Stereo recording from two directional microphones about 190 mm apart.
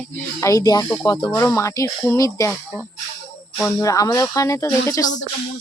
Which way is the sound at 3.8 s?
15° left (ahead or behind).